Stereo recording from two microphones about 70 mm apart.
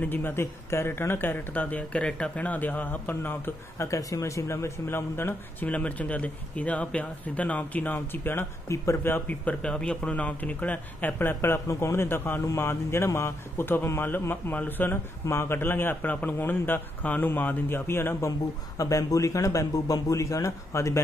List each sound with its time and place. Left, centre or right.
0.0 s speech: left
5.7 s speech: left
8.6 s speech: left
9.1 s speech: left
15.2 s speech: left
18.8 s speech: left